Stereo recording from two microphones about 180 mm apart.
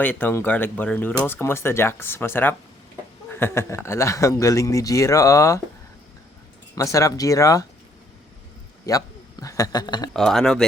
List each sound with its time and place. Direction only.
0.0 s speech: 10° left (ahead or behind)
6.7 s speech: 20° left (ahead or behind)
8.9 s a man's voice: 20° left (ahead or behind)
10.1 s speech: centre (ahead or behind)